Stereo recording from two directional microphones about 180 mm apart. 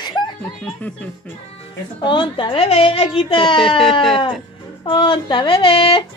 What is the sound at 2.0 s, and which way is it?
A woman's voice, 30° left (ahead or behind).